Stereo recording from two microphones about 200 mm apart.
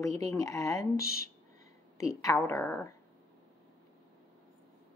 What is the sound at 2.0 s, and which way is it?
Speech, 15° left (ahead or behind).